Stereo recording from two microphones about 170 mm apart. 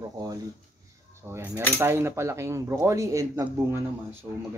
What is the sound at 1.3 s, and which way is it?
Cutlery, 10° right (ahead or behind).